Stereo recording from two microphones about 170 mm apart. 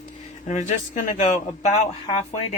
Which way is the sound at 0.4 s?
45° left (ahead or behind).